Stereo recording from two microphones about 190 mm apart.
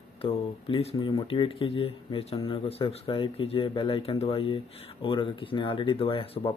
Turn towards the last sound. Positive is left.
turn(degrees=30)  # may be behind; listen again after turning